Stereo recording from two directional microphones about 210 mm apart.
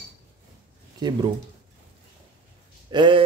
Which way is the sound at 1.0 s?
20° right (ahead or behind).